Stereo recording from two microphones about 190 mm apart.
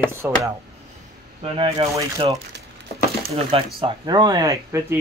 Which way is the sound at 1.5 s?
30° right (ahead or behind).